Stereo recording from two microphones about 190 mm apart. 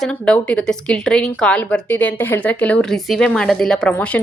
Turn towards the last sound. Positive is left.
turn(degrees=5)  # may be behind; listen again after turning